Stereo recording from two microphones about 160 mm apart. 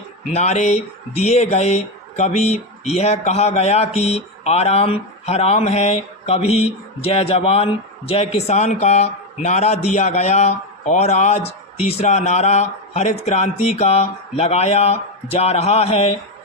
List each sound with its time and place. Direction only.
0.3 s a man's voice: 45° left (ahead or behind)